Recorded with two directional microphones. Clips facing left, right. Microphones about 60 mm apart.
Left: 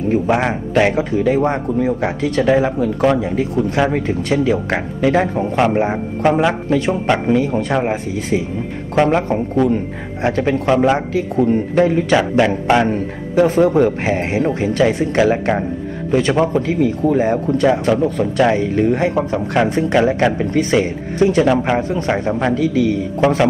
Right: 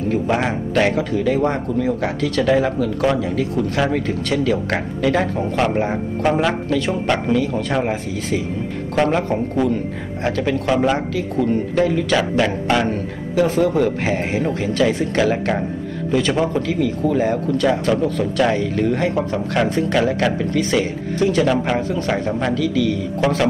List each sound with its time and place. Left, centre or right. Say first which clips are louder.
0.3 s a man's voice: left 3 dB; centre
2.1 s speech: left 2 dB; left
11.3 s speech: left 4 dB; left
13.3 s speech: left 4 dB; left
14.0 s speech: left 3 dB; left
16.1 s speech: left 3 dB; left